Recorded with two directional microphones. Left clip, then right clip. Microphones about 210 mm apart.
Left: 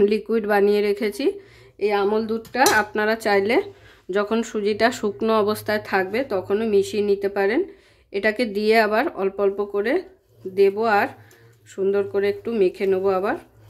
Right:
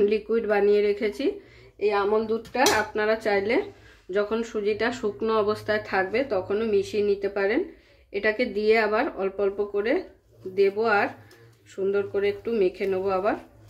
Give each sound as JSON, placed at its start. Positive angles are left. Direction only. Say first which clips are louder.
{"t": 0.0, "sound": "speech", "louder": "left 3 dB", "side_deg": 40}